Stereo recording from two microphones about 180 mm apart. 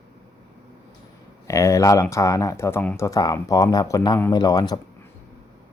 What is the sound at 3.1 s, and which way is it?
Speech, 20° left (ahead or behind).